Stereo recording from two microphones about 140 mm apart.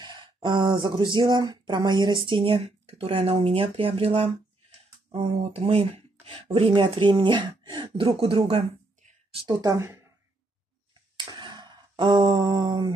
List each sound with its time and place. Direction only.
0.0 s speech: 35° right (ahead or behind)
9.5 s speech: 25° right (ahead or behind)
11.1 s a sound: 35° right (ahead or behind)